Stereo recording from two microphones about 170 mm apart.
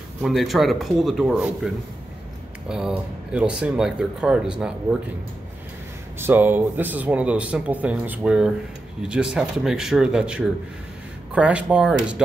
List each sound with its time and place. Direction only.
0.2 s speech: centre (ahead or behind)
2.7 s speech: 5° right (ahead or behind)
6.1 s speech: 10° right (ahead or behind)